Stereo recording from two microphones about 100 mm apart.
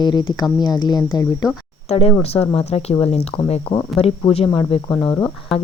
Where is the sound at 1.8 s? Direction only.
90° left.